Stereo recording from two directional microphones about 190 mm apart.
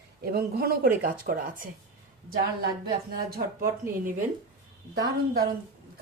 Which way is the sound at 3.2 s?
50° right (ahead or behind).